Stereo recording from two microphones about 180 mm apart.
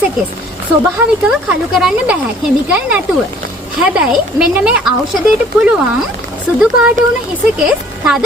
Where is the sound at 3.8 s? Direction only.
5° right (ahead or behind).